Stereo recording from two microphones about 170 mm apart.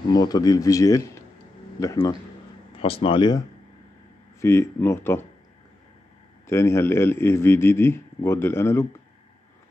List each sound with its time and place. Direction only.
0.1 s speech: 25° left (ahead or behind)
2.7 s speech: 35° left (ahead or behind)
4.4 s a man's voice: 15° left (ahead or behind)
6.4 s a man's voice: 15° left (ahead or behind)